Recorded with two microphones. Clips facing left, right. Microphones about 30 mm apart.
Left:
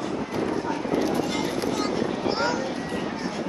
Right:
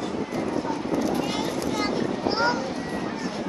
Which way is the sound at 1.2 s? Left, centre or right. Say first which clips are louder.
Even; centre.